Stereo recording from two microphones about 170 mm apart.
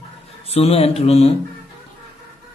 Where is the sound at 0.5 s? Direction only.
35° left (ahead or behind).